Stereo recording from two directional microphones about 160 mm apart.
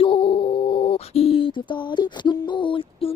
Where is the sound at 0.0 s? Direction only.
35° left (ahead or behind).